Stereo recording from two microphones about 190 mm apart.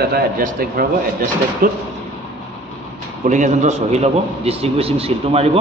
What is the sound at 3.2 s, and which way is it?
A man's voice, 40° right (ahead or behind).